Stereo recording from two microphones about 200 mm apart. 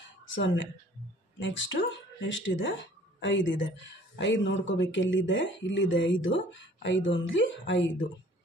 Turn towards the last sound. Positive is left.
turn(degrees=65)  # may be behind; listen again after turning